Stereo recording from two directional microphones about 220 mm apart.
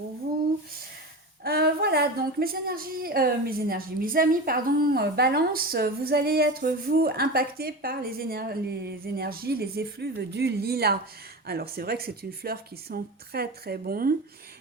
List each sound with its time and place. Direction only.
1.5 s a woman's voice: 45° right (ahead or behind)